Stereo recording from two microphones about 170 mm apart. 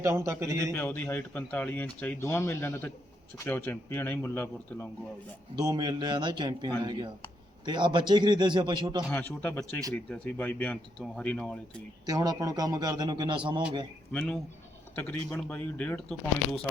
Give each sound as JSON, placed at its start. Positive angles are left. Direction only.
{"t": 0.0, "sound": "a man's voice", "side_deg": -15}
{"t": 0.8, "sound": "speech", "side_deg": 10}
{"t": 5.5, "sound": "a man's voice", "side_deg": -25}
{"t": 9.0, "sound": "speech", "side_deg": 10}
{"t": 12.0, "sound": "a man's voice", "side_deg": -20}
{"t": 14.1, "sound": "speech", "side_deg": 5}